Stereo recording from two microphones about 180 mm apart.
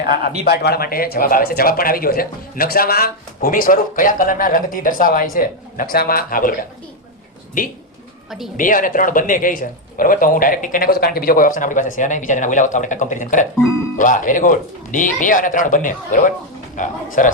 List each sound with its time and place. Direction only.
0.4 s speech: 60° left (ahead or behind); by 17.3 s 45° left (ahead or behind)